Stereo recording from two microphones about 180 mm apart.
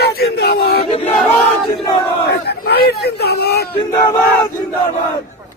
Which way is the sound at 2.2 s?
65° left (ahead or behind).